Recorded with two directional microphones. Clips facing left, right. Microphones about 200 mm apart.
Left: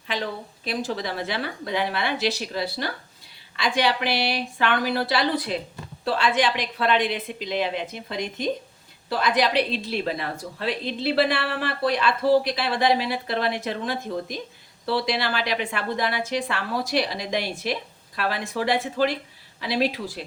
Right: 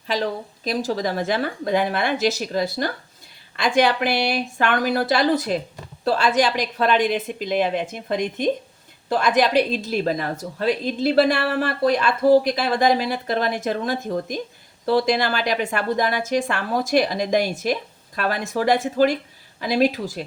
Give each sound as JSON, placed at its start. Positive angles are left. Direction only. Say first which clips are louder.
{"t": 0.1, "sound": "a woman's voice", "louder": "right 5 dB", "side_deg": -40}